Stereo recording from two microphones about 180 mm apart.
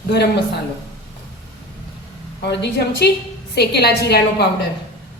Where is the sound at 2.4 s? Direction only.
70° left (ahead or behind).